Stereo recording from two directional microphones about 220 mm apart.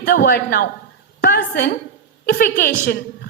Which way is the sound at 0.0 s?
40° left (ahead or behind).